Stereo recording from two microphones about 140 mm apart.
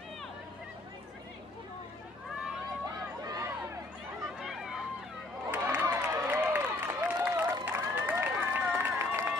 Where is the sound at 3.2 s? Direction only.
25° right (ahead or behind).